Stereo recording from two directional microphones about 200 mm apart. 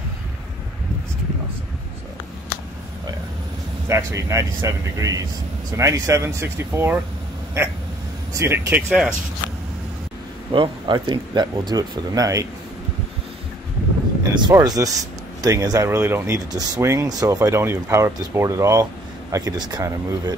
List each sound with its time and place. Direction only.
3.9 s speech: 15° right (ahead or behind)
10.5 s speech: 25° right (ahead or behind)
14.4 s speech: 20° right (ahead or behind)